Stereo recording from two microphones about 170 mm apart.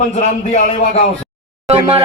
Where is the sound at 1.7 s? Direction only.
35° right (ahead or behind).